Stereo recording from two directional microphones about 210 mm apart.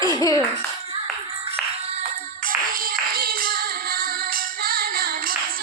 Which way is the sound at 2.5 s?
45° right (ahead or behind).